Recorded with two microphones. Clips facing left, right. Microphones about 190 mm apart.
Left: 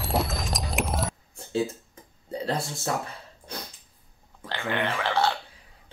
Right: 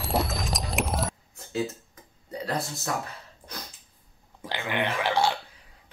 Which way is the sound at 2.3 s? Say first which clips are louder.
Left 3 dB; 30° left (ahead or behind).